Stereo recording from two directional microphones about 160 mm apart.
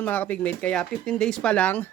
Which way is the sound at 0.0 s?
10° left (ahead or behind).